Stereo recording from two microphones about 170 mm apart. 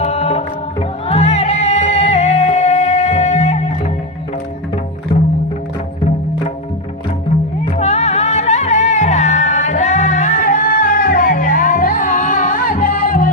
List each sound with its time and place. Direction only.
0.0 s music: 35° left (ahead or behind)
7.8 s music: 40° left (ahead or behind)